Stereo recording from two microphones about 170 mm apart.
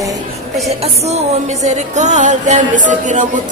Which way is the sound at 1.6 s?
45° right (ahead or behind).